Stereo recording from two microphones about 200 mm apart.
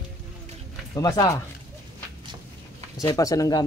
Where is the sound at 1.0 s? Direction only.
20° left (ahead or behind).